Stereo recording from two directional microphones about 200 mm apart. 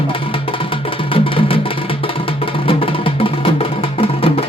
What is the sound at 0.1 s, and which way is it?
Music, 25° left (ahead or behind).